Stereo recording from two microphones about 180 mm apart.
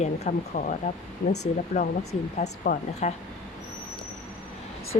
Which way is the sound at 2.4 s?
50° left (ahead or behind).